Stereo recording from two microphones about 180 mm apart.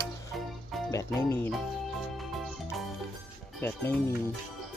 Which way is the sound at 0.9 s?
15° left (ahead or behind).